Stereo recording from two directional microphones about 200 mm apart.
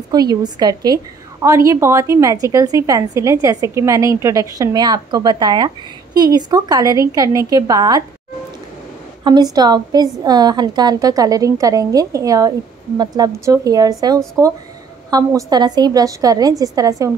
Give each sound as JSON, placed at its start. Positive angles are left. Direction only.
{"t": 0.1, "sound": "a woman's voice", "side_deg": -20}
{"t": 9.2, "sound": "a woman's voice", "side_deg": -20}